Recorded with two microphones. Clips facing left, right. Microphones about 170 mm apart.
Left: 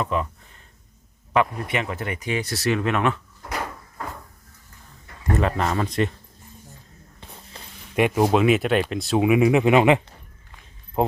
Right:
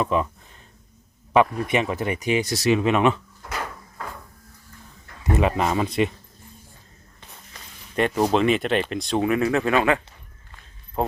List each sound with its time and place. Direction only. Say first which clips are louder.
0.0 s speech: right 2 dB; 20° right (ahead or behind)
1.4 s speech: right 3 dB; 20° right (ahead or behind)
5.3 s speech: right 1 dB; 15° right (ahead or behind)
7.6 s a sound: left 3 dB; 30° left (ahead or behind)
7.9 s speech: left 1 dB; 10° left (ahead or behind)